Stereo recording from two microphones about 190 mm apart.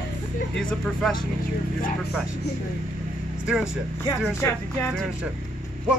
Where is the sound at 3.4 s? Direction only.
5° right (ahead or behind).